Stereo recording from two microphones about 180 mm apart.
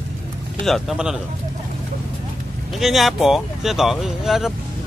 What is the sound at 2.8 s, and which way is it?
Speech, centre (ahead or behind).